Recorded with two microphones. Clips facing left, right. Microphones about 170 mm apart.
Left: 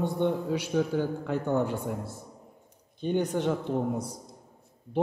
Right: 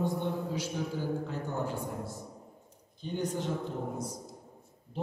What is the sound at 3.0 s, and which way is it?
A man's voice, 65° left (ahead or behind).